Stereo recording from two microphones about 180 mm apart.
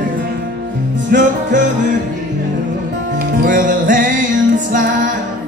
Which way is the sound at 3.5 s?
45° right (ahead or behind).